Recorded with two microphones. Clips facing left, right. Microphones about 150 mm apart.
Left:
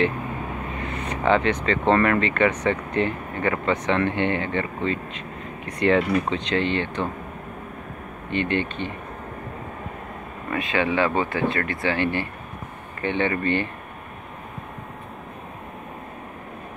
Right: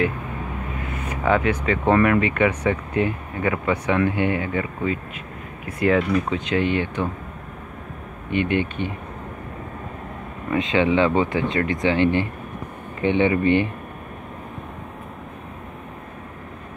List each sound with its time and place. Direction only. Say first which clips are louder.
0.8 s speech: even; 5° right (ahead or behind)
8.3 s speech: right 2 dB; 15° right (ahead or behind)
10.5 s speech: right 4 dB; 20° right (ahead or behind)